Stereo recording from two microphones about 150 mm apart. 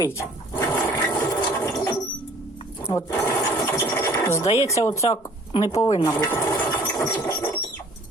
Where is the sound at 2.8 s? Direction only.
25° left (ahead or behind).